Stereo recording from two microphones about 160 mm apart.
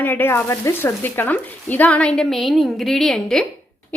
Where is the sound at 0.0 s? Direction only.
10° left (ahead or behind).